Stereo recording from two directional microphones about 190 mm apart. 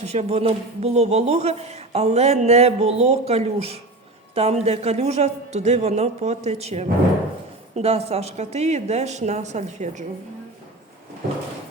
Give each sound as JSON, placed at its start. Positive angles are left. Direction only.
{"t": 0.0, "sound": "speech", "side_deg": -35}